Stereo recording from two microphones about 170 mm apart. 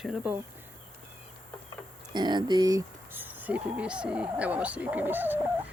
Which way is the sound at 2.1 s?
25° right (ahead or behind).